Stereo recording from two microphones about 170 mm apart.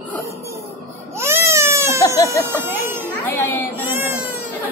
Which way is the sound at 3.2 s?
15° left (ahead or behind).